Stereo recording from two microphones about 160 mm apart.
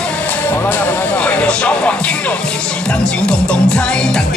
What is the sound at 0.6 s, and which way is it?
Speech, 10° left (ahead or behind).